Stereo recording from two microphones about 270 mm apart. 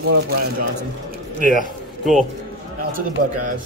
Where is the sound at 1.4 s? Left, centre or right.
Right.